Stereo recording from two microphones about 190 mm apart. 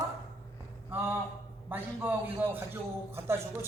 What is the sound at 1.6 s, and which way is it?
A man's voice, 10° right (ahead or behind).